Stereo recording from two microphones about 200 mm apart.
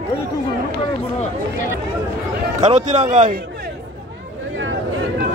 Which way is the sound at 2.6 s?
35° right (ahead or behind).